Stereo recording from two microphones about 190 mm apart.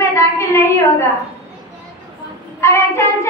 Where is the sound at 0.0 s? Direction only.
15° left (ahead or behind).